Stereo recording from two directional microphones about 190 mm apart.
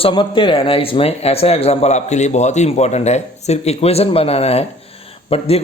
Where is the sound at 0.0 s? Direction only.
25° left (ahead or behind).